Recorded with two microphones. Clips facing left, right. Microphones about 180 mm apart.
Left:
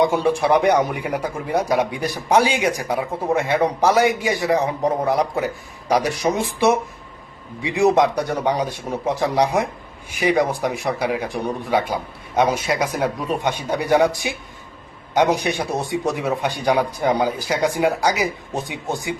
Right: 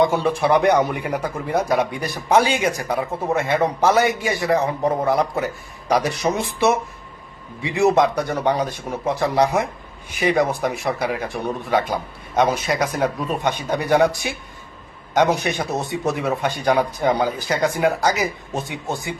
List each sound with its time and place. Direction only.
0.0 s a man's voice: 10° left (ahead or behind)
12.6 s a man's voice: 10° left (ahead or behind)